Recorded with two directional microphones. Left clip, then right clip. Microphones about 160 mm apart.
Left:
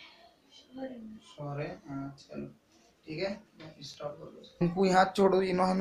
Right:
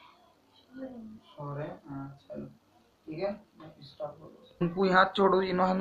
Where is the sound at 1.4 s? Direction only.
10° left (ahead or behind).